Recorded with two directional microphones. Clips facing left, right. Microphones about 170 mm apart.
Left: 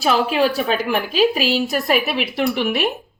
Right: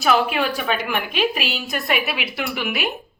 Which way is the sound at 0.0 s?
30° left (ahead or behind).